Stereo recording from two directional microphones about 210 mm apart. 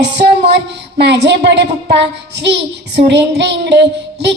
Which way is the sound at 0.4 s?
55° right (ahead or behind).